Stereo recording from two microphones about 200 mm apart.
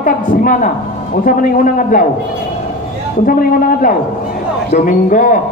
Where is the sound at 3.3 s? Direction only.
45° left (ahead or behind).